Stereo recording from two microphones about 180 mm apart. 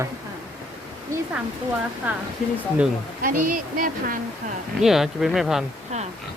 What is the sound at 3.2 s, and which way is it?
Speech, 50° right (ahead or behind).